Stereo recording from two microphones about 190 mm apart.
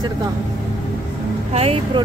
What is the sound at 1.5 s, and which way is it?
Speech, 30° right (ahead or behind).